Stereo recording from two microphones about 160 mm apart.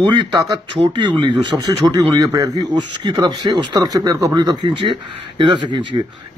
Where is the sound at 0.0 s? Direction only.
30° right (ahead or behind).